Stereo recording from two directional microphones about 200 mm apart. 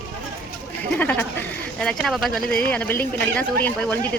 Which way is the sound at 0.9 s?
10° left (ahead or behind).